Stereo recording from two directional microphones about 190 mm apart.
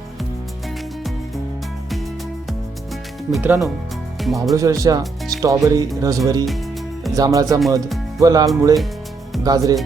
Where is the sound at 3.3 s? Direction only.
5° right (ahead or behind).